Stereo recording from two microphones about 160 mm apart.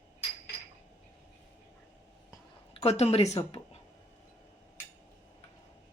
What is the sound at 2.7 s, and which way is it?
Speech, 40° left (ahead or behind).